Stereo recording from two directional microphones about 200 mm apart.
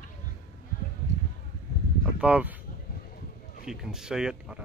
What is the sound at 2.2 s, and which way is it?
Speech, 5° right (ahead or behind).